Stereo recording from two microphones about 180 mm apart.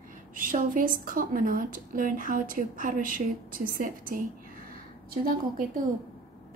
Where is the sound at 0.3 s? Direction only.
50° right (ahead or behind).